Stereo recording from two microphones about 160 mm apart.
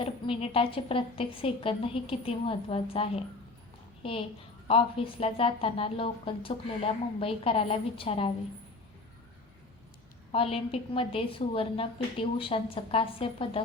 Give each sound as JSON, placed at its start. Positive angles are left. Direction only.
{"t": 0.0, "sound": "a woman's voice", "side_deg": 35}
{"t": 4.7, "sound": "a woman's voice", "side_deg": 35}
{"t": 10.3, "sound": "a woman's voice", "side_deg": 35}